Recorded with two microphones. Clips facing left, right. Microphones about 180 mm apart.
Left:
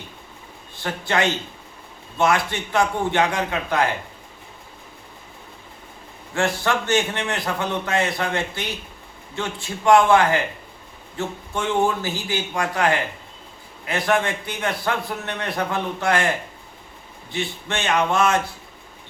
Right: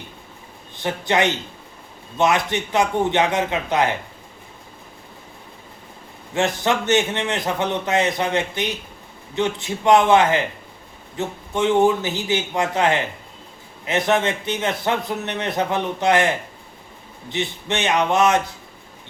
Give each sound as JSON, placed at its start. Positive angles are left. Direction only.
{"t": 0.8, "sound": "a man's voice", "side_deg": -20}
{"t": 6.3, "sound": "a man's voice", "side_deg": -20}
{"t": 17.3, "sound": "a man's voice", "side_deg": -20}